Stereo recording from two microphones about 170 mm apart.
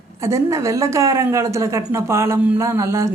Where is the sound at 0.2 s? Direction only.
15° right (ahead or behind).